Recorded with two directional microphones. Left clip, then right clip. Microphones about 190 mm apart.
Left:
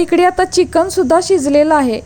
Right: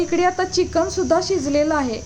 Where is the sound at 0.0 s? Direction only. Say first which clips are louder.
Left 7 dB; 40° left (ahead or behind).